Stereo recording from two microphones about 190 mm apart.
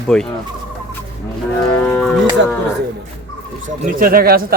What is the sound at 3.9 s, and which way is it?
Speech, 50° right (ahead or behind).